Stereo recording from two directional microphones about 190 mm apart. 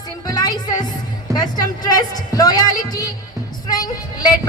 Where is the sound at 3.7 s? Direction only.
20° left (ahead or behind).